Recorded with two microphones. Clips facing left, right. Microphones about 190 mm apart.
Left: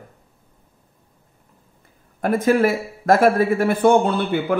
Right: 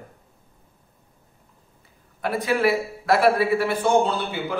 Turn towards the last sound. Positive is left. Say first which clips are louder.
# left 6 dB
turn(degrees=55)  # may be behind; listen again after turning